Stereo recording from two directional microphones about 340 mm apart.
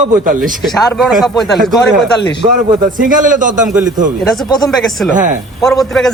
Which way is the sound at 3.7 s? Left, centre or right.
Centre.